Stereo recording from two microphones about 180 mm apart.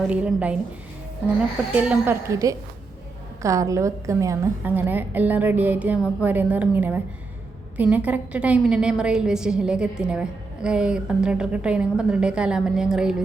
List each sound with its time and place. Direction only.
0.1 s a woman's voice: 5° right (ahead or behind)
1.7 s a woman's voice: 10° right (ahead or behind)